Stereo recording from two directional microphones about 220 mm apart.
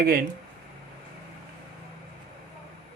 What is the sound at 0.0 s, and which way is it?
Speech, 45° right (ahead or behind).